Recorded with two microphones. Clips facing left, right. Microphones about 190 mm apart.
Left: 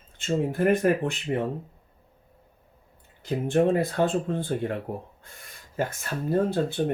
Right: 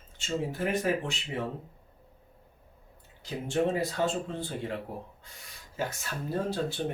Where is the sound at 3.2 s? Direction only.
55° left (ahead or behind).